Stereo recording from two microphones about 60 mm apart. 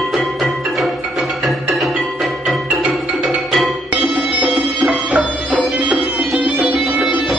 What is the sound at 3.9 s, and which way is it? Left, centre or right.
Music, right.